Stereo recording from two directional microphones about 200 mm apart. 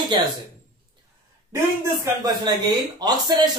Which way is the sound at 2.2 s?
20° right (ahead or behind).